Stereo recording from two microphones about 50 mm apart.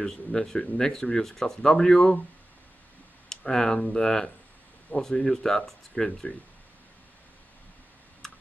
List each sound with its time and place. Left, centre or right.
0.0 s speech: centre
3.3 s speech: centre
8.2 s typing: centre